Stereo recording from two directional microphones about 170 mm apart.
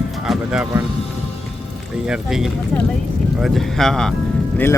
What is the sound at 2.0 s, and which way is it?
Speech, 5° right (ahead or behind).